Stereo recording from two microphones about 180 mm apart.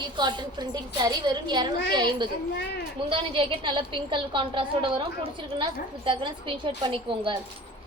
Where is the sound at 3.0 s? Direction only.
30° right (ahead or behind).